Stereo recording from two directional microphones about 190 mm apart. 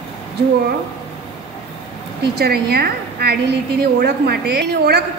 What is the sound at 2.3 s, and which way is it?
A woman's voice, 55° right (ahead or behind).